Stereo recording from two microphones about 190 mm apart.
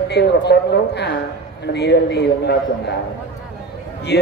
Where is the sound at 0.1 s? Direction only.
60° left (ahead or behind).